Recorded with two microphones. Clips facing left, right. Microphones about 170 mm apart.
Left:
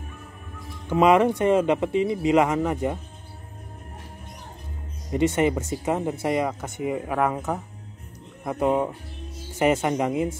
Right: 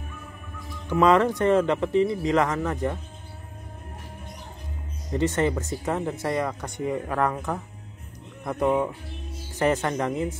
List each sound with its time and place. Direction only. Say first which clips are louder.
0.8 s speech: left 1 dB; 15° left (ahead or behind)
5.1 s speech: left 2 dB; 10° left (ahead or behind)